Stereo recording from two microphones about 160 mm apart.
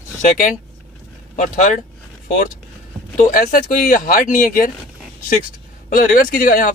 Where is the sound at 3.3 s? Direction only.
60° left (ahead or behind).